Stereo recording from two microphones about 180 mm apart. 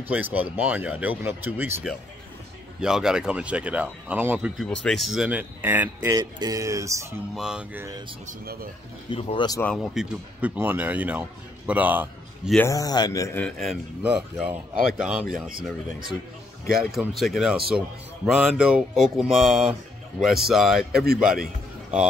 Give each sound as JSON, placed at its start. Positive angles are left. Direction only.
{"t": 0.1, "sound": "speech", "side_deg": -10}
{"t": 4.6, "sound": "speech", "side_deg": 5}
{"t": 6.1, "sound": "speech", "side_deg": -20}
{"t": 7.3, "sound": "speech", "side_deg": -5}
{"t": 8.3, "sound": "speech", "side_deg": -55}
{"t": 9.1, "sound": "speech", "side_deg": 25}
{"t": 9.6, "sound": "speech", "side_deg": 5}
{"t": 12.5, "sound": "speech", "side_deg": 15}
{"t": 13.4, "sound": "speech", "side_deg": 0}
{"t": 16.8, "sound": "speech", "side_deg": 0}